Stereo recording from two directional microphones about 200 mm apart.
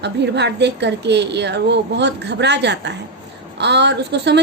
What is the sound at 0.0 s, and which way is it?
A woman's voice, 60° right (ahead or behind).